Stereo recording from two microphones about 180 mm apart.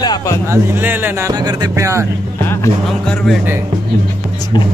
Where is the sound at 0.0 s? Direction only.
20° left (ahead or behind).